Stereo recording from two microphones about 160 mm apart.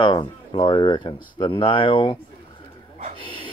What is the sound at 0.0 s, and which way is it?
Speech, 30° left (ahead or behind).